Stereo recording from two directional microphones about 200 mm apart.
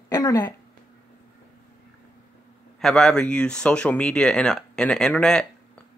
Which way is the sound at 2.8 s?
5° left (ahead or behind).